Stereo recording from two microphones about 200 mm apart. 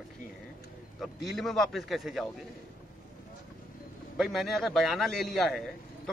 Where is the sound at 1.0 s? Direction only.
Centre (ahead or behind).